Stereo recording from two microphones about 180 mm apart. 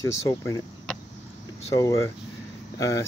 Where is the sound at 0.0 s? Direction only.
15° left (ahead or behind).